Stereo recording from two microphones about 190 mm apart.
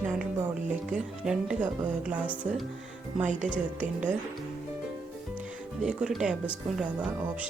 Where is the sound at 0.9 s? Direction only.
5° right (ahead or behind).